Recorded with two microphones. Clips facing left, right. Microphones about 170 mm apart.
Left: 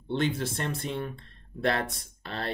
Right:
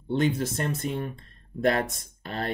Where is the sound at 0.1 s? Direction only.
45° right (ahead or behind).